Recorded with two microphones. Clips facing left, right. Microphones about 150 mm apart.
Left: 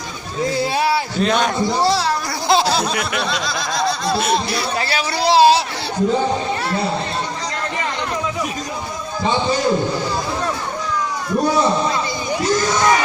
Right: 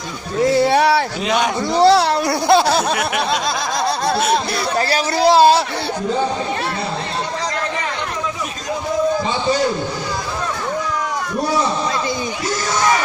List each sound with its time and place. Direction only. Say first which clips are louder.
0.5 s a sound: right 4 dB; 70° right (ahead or behind)
1.2 s a man's voice: left 1 dB; 5° right (ahead or behind)
1.6 s a man's voice: right 5 dB; 65° right (ahead or behind)
4.8 s a man's voice: right 8 dB; 40° right (ahead or behind)